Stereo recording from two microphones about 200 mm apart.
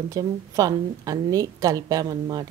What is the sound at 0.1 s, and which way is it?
A woman's voice, 20° right (ahead or behind).